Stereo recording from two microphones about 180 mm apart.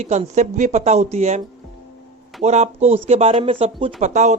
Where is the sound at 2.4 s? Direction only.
40° right (ahead or behind).